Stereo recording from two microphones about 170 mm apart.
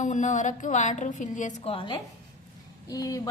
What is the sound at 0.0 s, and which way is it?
Speech, 45° left (ahead or behind).